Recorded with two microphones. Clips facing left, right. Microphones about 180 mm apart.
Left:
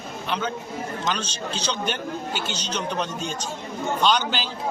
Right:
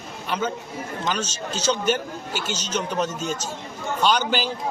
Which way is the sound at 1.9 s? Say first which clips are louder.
Right 1 dB; 45° right (ahead or behind).